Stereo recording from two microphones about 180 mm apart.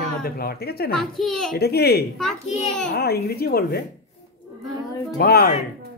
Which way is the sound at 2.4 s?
40° left (ahead or behind).